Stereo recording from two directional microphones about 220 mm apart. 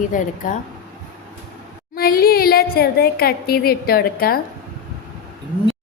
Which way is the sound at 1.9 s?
45° left (ahead or behind).